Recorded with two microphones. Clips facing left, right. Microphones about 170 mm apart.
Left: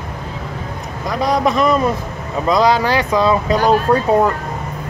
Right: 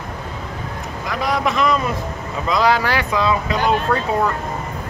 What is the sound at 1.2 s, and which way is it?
Speech, 40° left (ahead or behind).